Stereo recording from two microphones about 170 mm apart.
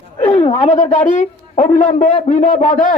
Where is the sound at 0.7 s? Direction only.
45° left (ahead or behind).